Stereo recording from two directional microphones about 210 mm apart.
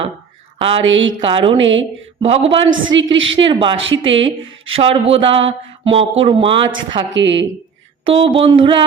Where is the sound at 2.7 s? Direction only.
65° right (ahead or behind).